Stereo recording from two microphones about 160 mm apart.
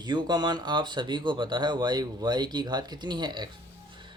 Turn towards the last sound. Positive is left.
turn(degrees=-25)  # may be behind; listen again after turning